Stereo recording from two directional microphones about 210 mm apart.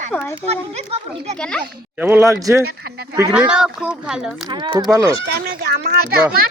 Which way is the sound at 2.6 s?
50° right (ahead or behind).